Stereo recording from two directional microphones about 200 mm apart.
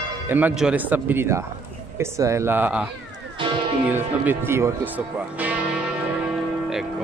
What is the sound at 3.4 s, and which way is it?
Speech, 25° right (ahead or behind).